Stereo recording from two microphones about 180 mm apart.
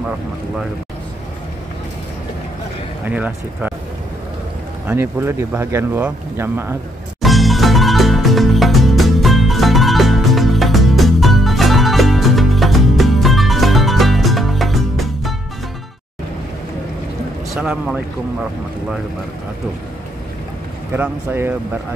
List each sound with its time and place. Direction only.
3.1 s speech: 10° right (ahead or behind)
4.8 s speech: 15° right (ahead or behind)
7.2 s music: centre (ahead or behind)
17.6 s speech: 5° right (ahead or behind)
20.9 s speech: 10° right (ahead or behind)